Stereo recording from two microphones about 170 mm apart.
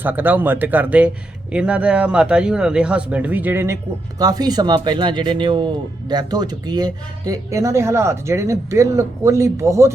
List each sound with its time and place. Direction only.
0.0 s speech: 10° right (ahead or behind)